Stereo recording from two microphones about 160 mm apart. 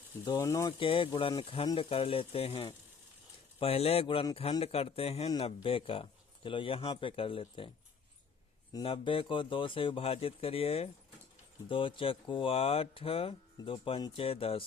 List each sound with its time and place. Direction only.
0.3 s speech: 25° left (ahead or behind)
0.8 s speech: 35° left (ahead or behind)
8.7 s speech: 35° left (ahead or behind)